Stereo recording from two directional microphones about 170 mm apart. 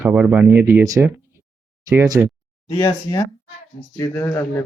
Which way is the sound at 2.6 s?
25° left (ahead or behind).